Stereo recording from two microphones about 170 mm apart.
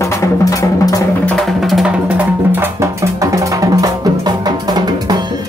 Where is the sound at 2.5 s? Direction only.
15° right (ahead or behind).